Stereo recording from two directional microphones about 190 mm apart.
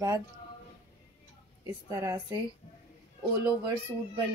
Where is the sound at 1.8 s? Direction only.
15° right (ahead or behind).